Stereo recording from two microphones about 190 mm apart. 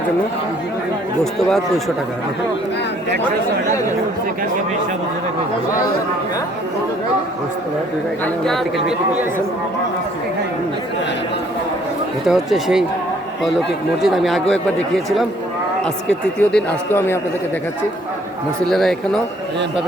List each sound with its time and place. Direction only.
1.2 s speech: centre (ahead or behind)
8.2 s speech: centre (ahead or behind)
12.2 s speech: centre (ahead or behind)
14.0 s a man's voice: centre (ahead or behind)
18.7 s speech: centre (ahead or behind)